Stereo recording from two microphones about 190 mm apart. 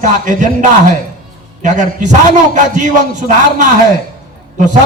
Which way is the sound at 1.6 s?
40° right (ahead or behind).